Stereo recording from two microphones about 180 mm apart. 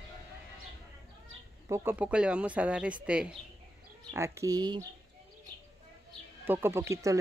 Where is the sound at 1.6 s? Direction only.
15° right (ahead or behind).